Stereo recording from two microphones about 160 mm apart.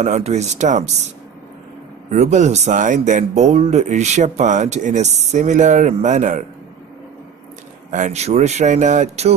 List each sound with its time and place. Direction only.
0.0 s speech: 45° right (ahead or behind)
7.9 s speech: 50° right (ahead or behind)